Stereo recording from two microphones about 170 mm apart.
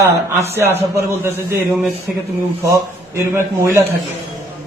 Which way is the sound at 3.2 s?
15° right (ahead or behind).